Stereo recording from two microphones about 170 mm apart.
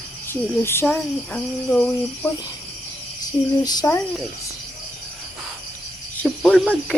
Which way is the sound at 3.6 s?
25° left (ahead or behind).